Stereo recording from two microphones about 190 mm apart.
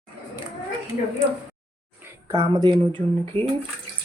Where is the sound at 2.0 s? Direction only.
15° right (ahead or behind).